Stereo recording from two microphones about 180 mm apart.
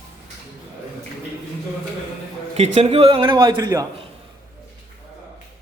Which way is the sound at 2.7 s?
35° right (ahead or behind).